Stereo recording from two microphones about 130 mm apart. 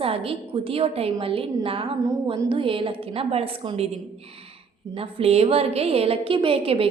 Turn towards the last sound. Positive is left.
turn(degrees=-45)  # may be behind; listen again after turning